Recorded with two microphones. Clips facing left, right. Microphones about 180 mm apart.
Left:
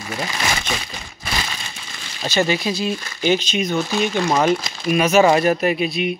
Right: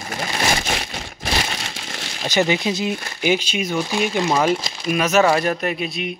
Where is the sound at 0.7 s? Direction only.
50° right (ahead or behind).